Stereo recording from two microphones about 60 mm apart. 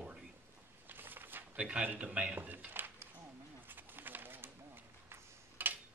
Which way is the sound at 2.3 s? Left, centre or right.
Right.